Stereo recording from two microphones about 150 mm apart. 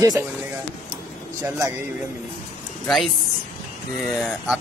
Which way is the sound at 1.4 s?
20° right (ahead or behind).